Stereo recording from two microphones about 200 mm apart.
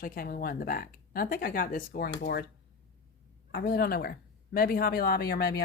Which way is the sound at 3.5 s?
50° left (ahead or behind).